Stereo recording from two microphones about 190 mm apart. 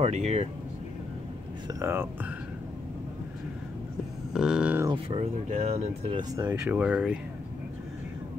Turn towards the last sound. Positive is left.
turn(degrees=-5)  # may be behind; listen again after turning